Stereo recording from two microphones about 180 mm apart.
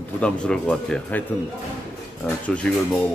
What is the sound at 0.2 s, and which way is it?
Speech, 5° left (ahead or behind).